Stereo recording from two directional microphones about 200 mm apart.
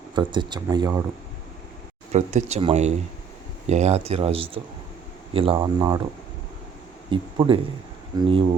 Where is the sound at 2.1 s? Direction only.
35° right (ahead or behind).